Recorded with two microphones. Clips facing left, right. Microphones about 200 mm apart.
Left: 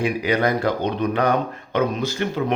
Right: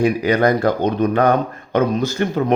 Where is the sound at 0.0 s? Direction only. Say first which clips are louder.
Right 5 dB; 45° right (ahead or behind).